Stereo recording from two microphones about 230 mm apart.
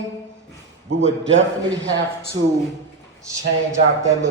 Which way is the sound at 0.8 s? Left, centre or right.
Right.